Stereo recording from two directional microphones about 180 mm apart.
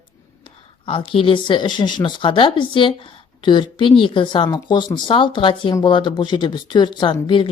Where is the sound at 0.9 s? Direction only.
30° left (ahead or behind).